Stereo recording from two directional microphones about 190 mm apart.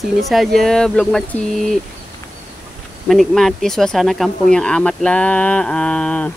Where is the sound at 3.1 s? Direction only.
Centre (ahead or behind).